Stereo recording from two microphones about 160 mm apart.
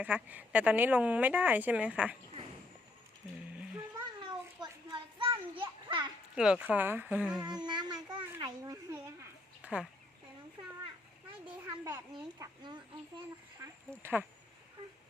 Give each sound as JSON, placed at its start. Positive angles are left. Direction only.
{"t": 0.0, "sound": "a woman's voice", "side_deg": -10}
{"t": 4.2, "sound": "children playing", "side_deg": -30}
{"t": 6.3, "sound": "a woman's voice", "side_deg": -5}
{"t": 7.4, "sound": "speech", "side_deg": -25}
{"t": 9.6, "sound": "chicken", "side_deg": -10}
{"t": 11.4, "sound": "a sound", "side_deg": -25}
{"t": 12.6, "sound": "speech", "side_deg": -30}
{"t": 14.0, "sound": "a woman's voice", "side_deg": -15}
{"t": 14.8, "sound": "a sound", "side_deg": -25}